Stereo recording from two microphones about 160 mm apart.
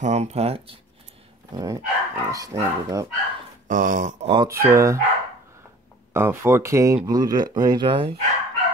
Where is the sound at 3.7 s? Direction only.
55° right (ahead or behind).